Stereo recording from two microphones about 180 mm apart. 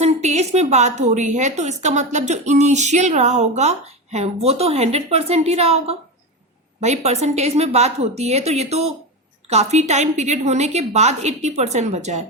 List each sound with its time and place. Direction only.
0.0 s a woman's voice: 40° right (ahead or behind)